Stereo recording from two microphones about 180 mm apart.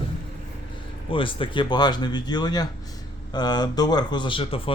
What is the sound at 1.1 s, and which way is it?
Speech, 30° left (ahead or behind).